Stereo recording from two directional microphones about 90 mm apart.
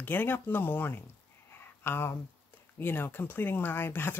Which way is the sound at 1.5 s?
25° left (ahead or behind).